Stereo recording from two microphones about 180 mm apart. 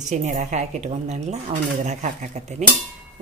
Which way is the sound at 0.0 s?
45° right (ahead or behind).